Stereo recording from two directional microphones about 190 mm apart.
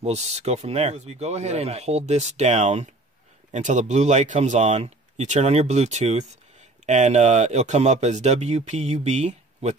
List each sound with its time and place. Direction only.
0.0 s speech: 35° right (ahead or behind)